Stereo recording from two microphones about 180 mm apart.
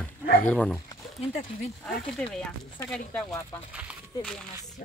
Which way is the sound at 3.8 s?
Centre (ahead or behind).